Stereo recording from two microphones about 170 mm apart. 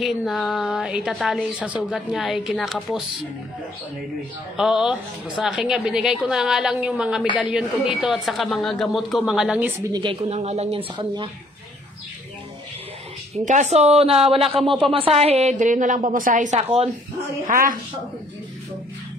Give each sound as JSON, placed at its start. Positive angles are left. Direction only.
{"t": 0.0, "sound": "a woman's voice", "side_deg": 0}
{"t": 4.6, "sound": "a woman's voice", "side_deg": -5}
{"t": 9.9, "sound": "speech", "side_deg": -30}
{"t": 13.3, "sound": "a woman's voice", "side_deg": -45}